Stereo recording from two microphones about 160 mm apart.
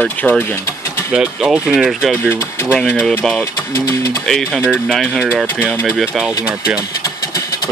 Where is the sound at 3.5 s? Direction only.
20° left (ahead or behind).